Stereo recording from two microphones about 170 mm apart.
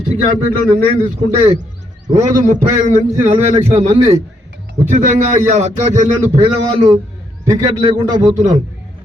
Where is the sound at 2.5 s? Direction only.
45° right (ahead or behind).